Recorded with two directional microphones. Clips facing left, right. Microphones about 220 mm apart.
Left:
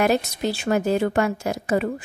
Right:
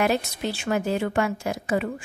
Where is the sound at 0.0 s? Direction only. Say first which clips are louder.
Left 3 dB; 40° left (ahead or behind).